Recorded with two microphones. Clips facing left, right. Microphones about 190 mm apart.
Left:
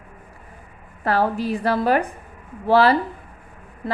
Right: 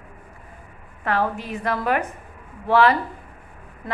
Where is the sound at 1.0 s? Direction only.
35° left (ahead or behind).